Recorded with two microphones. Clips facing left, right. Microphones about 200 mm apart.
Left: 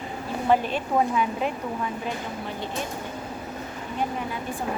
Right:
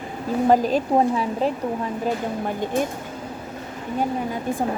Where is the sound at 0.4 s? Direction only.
40° right (ahead or behind).